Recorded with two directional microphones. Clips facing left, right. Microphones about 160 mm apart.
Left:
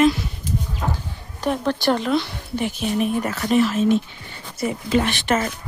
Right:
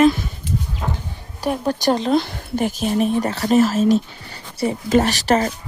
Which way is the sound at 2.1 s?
45° right (ahead or behind).